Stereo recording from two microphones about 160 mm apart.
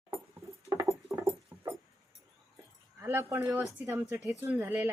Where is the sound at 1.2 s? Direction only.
20° right (ahead or behind).